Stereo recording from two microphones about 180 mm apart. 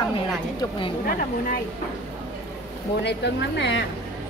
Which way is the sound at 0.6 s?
25° left (ahead or behind).